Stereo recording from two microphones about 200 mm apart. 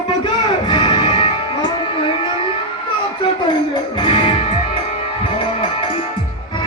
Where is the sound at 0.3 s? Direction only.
25° left (ahead or behind).